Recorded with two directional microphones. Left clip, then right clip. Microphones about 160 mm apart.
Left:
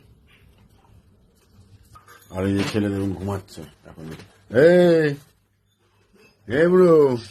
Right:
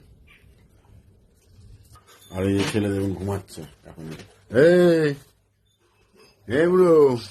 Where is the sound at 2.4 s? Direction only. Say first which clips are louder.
Even; 5° right (ahead or behind).